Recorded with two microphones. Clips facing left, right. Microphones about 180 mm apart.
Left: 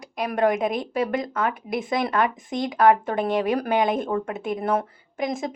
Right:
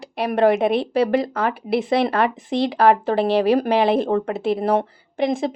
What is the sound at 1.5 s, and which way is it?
Speech, 75° right (ahead or behind).